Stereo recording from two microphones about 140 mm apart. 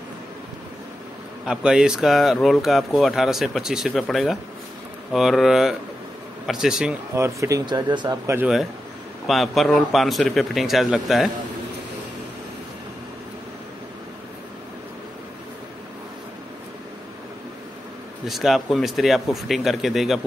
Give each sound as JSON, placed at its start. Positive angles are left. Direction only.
{"t": 1.4, "sound": "speech", "side_deg": -5}
{"t": 7.2, "sound": "speech", "side_deg": -20}
{"t": 9.3, "sound": "speech", "side_deg": 0}
{"t": 18.2, "sound": "speech", "side_deg": 0}